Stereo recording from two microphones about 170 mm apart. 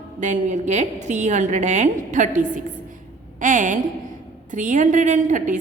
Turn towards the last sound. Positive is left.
turn(degrees=-50)  # may be behind; listen again after turning